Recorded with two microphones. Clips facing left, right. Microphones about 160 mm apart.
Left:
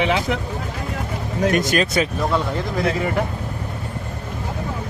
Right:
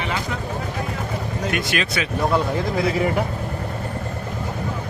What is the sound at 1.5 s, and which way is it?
Speech, 40° left (ahead or behind).